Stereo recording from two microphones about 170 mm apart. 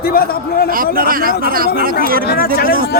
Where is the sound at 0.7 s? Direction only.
55° right (ahead or behind).